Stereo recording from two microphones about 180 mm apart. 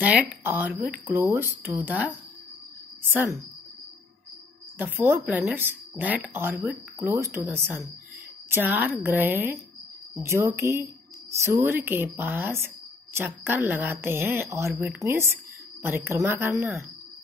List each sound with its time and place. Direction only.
0.0 s a woman's voice: 10° right (ahead or behind)
3.1 s a woman's voice: 10° right (ahead or behind)
4.7 s a woman's voice: 10° right (ahead or behind)